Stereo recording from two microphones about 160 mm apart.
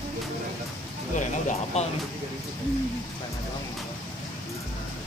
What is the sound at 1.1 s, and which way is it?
Music, 45° left (ahead or behind).